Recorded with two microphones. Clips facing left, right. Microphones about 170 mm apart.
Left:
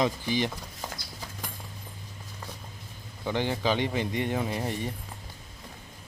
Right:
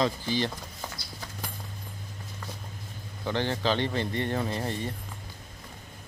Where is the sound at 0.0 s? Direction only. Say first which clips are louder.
Even; 15° left (ahead or behind).